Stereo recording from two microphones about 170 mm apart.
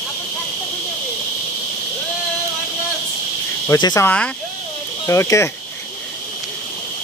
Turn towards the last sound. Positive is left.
turn(degrees=15)  # may be behind; listen again after turning